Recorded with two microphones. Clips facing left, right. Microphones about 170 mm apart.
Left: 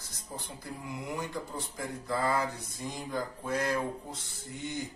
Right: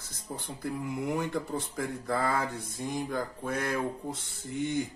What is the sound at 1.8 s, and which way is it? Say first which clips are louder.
Speech: right 1 dB; 50° right (ahead or behind).